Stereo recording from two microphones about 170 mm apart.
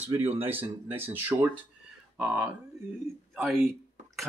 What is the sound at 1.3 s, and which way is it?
Speech, 20° right (ahead or behind).